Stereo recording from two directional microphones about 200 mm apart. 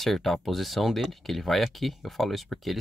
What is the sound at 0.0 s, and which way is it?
Speech, centre (ahead or behind).